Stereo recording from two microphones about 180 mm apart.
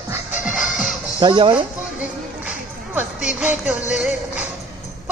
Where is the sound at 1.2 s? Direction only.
25° right (ahead or behind).